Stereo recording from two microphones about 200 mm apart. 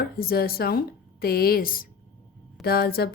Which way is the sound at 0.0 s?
50° left (ahead or behind).